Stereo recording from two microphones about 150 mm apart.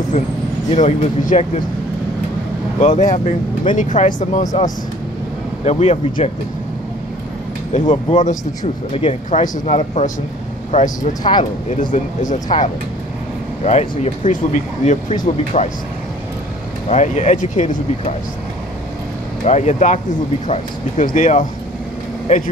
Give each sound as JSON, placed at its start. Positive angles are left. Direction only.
{"t": 0.2, "sound": "speech", "side_deg": 55}
{"t": 2.8, "sound": "speech", "side_deg": 55}
{"t": 7.7, "sound": "speech", "side_deg": 55}
{"t": 8.9, "sound": "speech", "side_deg": 40}
{"t": 11.0, "sound": "speech", "side_deg": 30}
{"t": 11.7, "sound": "speech", "side_deg": 60}
{"t": 16.9, "sound": "speech", "side_deg": 50}
{"t": 19.4, "sound": "speech", "side_deg": 50}